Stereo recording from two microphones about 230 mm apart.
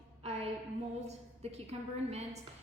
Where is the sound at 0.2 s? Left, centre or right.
Right.